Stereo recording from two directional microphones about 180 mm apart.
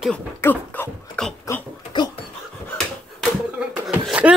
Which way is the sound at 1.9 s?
25° left (ahead or behind).